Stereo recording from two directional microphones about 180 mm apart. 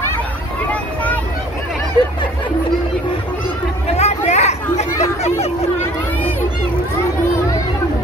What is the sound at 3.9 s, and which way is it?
Hubbub, 35° left (ahead or behind).